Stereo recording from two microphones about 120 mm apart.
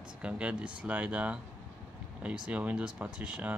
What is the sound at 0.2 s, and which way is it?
Speech, 10° right (ahead or behind).